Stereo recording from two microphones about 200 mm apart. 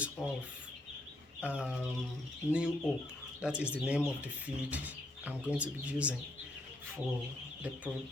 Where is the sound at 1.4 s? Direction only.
5° right (ahead or behind).